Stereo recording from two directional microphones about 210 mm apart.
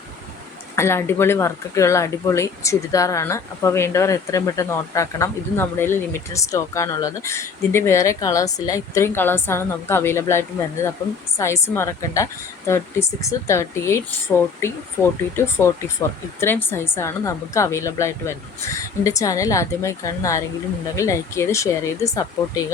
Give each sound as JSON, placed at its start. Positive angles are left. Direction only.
{"t": 0.8, "sound": "speech", "side_deg": 10}